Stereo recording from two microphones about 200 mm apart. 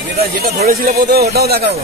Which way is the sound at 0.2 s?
50° right (ahead or behind).